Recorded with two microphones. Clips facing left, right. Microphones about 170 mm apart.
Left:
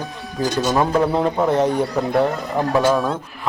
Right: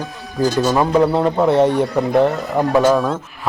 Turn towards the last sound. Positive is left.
turn(degrees=0)  # may be behind; listen again after turning